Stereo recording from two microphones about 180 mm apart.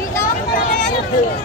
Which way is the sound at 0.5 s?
50° left (ahead or behind).